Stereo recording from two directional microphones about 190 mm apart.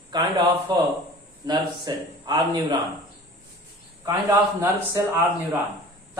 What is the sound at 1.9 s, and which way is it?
Speech, 20° right (ahead or behind).